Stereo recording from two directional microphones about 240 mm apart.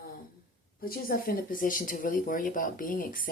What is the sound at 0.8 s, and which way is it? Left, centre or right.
Speech, left.